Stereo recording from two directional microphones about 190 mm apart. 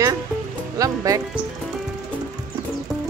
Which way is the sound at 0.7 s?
15° right (ahead or behind).